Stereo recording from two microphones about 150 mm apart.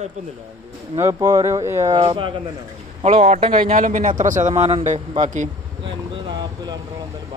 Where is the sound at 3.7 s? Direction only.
60° right (ahead or behind).